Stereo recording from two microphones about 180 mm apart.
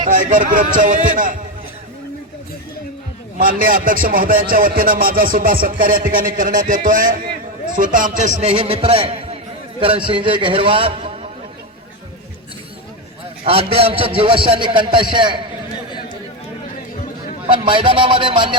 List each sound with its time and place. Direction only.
0.0 s speech: 45° right (ahead or behind)
3.3 s a man's voice: 50° right (ahead or behind); by 11.3 s 30° right (ahead or behind)
13.4 s a man's voice: 30° right (ahead or behind)
17.5 s a man's voice: 25° right (ahead or behind)